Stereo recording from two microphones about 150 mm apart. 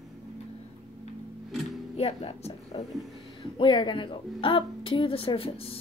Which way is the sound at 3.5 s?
30° left (ahead or behind).